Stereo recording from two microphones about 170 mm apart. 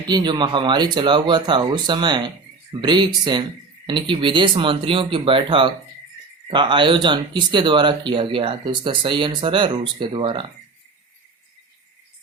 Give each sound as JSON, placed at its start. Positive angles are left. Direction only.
{"t": 0.0, "sound": "speech", "side_deg": -25}